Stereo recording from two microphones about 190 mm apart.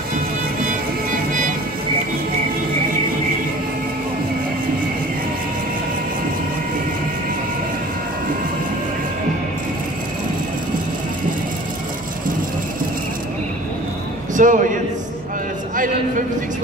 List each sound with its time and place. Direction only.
14.3 s a man's voice: 45° right (ahead or behind)